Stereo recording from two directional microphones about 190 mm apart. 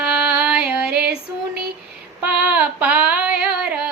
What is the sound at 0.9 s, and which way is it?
Female singing, 60° right (ahead or behind).